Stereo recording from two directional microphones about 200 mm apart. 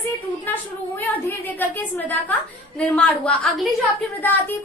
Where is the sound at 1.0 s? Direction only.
10° left (ahead or behind).